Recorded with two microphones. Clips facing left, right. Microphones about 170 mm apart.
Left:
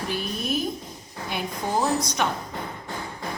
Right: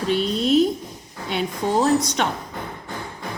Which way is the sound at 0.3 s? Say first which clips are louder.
Right 11 dB; 80° right.